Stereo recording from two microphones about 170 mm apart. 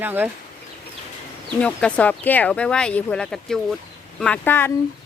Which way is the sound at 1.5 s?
5° left (ahead or behind).